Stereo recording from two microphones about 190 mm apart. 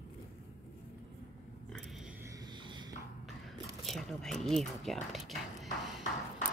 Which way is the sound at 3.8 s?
Centre (ahead or behind).